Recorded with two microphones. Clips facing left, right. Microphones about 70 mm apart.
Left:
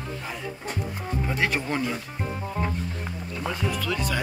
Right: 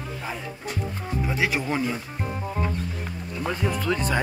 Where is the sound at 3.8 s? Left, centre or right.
Right.